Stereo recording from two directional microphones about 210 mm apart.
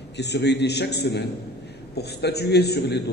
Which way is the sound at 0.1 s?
55° left (ahead or behind).